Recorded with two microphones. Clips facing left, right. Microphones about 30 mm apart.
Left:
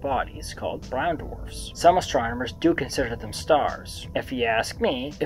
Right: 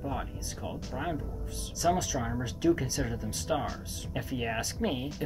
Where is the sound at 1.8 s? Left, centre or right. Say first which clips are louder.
Left 10 dB; left.